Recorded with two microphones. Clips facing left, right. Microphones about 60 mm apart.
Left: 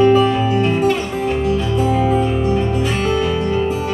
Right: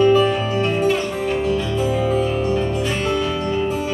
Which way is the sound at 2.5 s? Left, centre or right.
Centre.